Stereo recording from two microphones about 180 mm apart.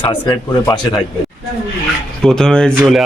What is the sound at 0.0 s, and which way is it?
Speech, 25° left (ahead or behind).